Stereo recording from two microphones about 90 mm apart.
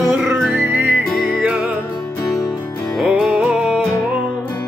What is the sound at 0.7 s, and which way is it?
Music, 20° right (ahead or behind).